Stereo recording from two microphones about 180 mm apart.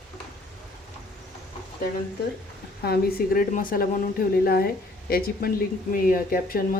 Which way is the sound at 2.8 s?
60° left (ahead or behind).